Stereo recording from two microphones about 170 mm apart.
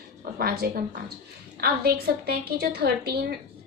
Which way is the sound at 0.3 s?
65° right (ahead or behind).